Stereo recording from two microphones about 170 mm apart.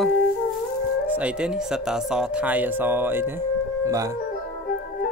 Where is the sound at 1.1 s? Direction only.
5° right (ahead or behind).